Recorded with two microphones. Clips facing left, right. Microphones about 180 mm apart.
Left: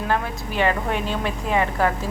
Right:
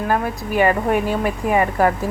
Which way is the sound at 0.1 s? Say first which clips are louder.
Right 4 dB; 10° right (ahead or behind).